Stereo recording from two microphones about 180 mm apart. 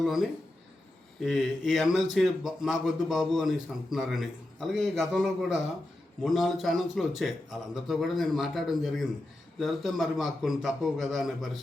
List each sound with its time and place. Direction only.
0.0 s a man's voice: centre (ahead or behind)